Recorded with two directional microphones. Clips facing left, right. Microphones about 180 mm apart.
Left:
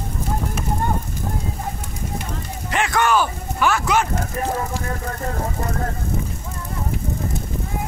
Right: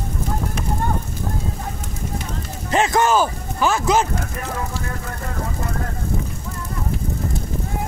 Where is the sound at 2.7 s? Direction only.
30° right (ahead or behind).